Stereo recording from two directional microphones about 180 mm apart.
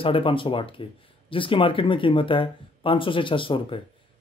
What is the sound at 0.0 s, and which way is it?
Speech, 30° left (ahead or behind).